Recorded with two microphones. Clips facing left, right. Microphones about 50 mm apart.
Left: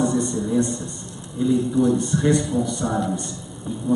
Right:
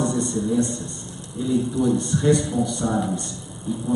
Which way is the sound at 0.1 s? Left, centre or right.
Left.